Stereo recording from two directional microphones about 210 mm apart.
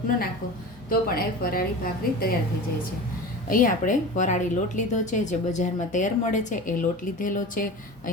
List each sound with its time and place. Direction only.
0.9 s a woman's voice: 45° left (ahead or behind)
3.5 s a woman's voice: 40° left (ahead or behind)